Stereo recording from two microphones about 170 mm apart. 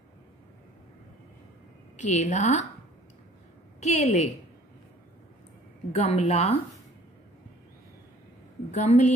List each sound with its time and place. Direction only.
2.0 s a woman's voice: 45° left (ahead or behind)
3.8 s a woman's voice: 40° left (ahead or behind)
5.9 s a woman's voice: 40° left (ahead or behind)
8.7 s a woman's voice: 45° left (ahead or behind)